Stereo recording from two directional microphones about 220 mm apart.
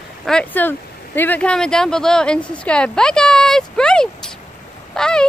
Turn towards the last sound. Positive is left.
turn(degrees=5)  # may be behind; listen again after turning